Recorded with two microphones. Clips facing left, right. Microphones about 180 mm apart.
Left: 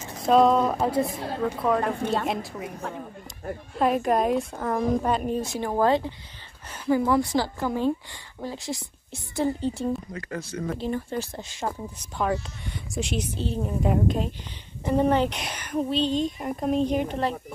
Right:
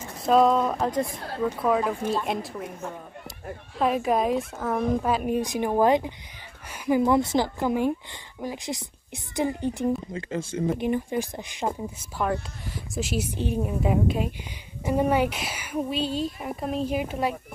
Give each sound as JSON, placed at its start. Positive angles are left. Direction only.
{"t": 0.3, "sound": "a woman's voice", "side_deg": 0}
{"t": 3.7, "sound": "a woman's voice", "side_deg": 0}
{"t": 12.2, "sound": "a woman's voice", "side_deg": 0}